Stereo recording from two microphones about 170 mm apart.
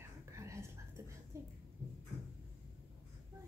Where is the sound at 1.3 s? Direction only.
15° right (ahead or behind).